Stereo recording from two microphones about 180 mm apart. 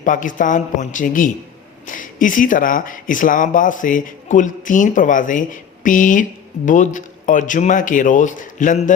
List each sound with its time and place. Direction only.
0.0 s speech: 45° left (ahead or behind)